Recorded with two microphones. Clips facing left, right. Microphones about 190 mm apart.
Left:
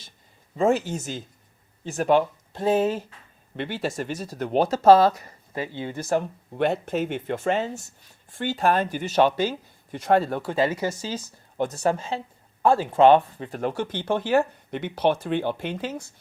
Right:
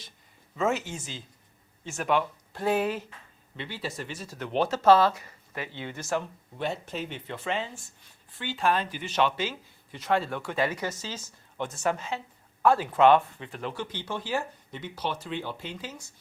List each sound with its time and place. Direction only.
0.5 s speech: 35° left (ahead or behind)
2.5 s speech: 25° left (ahead or behind)
3.6 s speech: 50° left (ahead or behind)